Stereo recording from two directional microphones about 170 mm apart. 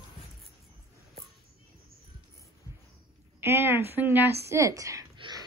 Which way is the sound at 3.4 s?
15° right (ahead or behind).